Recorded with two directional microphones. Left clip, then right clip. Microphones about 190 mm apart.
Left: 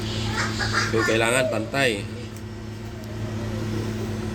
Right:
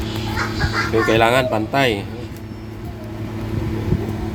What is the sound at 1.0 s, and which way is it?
Speech, 50° right (ahead or behind).